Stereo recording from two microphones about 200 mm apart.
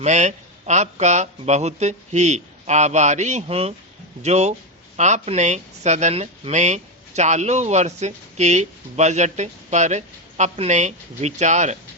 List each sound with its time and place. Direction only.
0.0 s speech: 35° right (ahead or behind)